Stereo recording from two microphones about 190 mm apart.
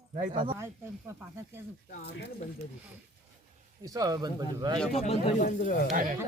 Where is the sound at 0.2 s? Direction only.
45° right (ahead or behind).